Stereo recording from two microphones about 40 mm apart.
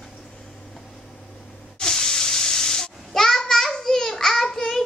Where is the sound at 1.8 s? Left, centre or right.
Centre.